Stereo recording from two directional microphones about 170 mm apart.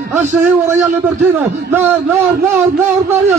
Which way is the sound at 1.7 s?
10° right (ahead or behind).